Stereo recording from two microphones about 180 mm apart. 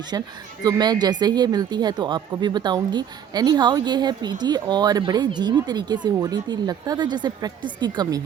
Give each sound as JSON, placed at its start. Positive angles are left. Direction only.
{"t": 0.1, "sound": "speech", "side_deg": -20}